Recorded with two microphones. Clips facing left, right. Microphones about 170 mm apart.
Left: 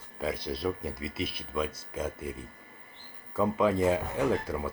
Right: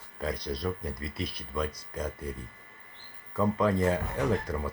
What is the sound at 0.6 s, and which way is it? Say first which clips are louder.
Speech: left 2 dB; 5° left (ahead or behind).